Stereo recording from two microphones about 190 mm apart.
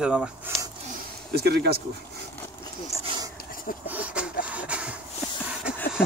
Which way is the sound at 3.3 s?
50° left (ahead or behind).